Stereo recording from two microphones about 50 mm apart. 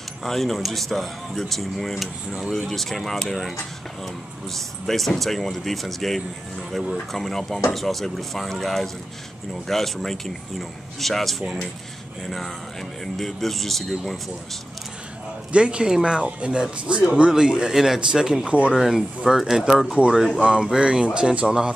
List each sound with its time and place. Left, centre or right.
0.2 s speech: centre
15.5 s speech: centre
18.4 s speech: right
18.8 s speech: centre